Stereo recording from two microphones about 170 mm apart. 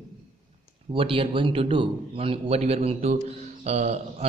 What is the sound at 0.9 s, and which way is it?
Speech, 30° right (ahead or behind).